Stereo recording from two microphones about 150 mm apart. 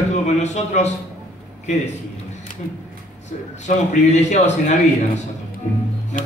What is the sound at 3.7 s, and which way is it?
Speech, 55° left (ahead or behind).